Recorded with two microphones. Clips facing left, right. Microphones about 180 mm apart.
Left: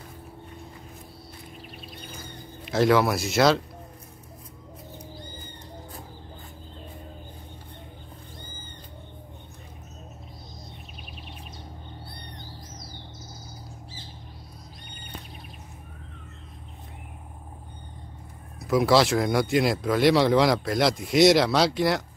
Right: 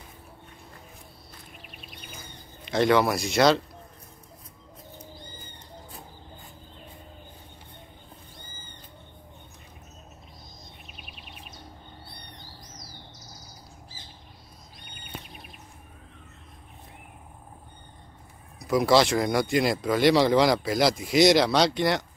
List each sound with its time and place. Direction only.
2.6 s speech: centre (ahead or behind)
11.0 s a sound: 35° left (ahead or behind)
18.6 s speech: centre (ahead or behind)